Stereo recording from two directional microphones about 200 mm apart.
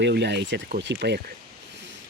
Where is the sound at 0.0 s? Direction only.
60° right (ahead or behind).